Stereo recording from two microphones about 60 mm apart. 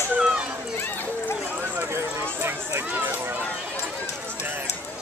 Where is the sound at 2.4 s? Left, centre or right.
Right.